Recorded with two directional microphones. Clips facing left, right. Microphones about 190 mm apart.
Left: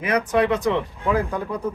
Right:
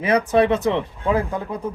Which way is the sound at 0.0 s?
30° right (ahead or behind).